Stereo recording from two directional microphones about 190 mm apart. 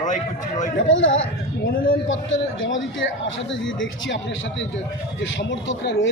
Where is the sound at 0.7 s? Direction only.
85° left.